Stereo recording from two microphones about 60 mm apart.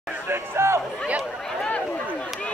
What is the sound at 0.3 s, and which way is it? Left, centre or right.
Speech, right.